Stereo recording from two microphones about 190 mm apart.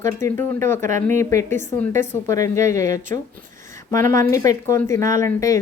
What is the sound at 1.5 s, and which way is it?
Speech, 40° right (ahead or behind).